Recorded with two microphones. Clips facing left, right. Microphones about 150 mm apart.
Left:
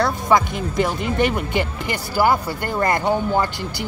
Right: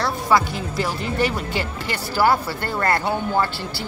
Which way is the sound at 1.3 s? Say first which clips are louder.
Left 3 dB; 20° left (ahead or behind).